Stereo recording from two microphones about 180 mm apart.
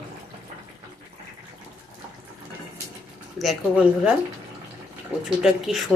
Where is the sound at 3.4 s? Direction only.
5° right (ahead or behind).